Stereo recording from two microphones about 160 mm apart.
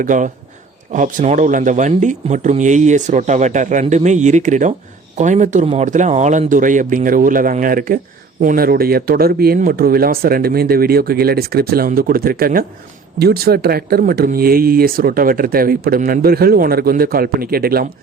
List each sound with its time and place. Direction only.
0.0 s speech: 55° right (ahead or behind)
13.1 s speech: 80° right